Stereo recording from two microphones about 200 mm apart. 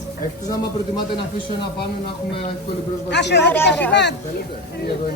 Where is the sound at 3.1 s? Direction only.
60° left (ahead or behind).